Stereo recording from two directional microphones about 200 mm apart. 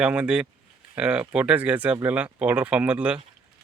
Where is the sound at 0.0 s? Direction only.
5° right (ahead or behind).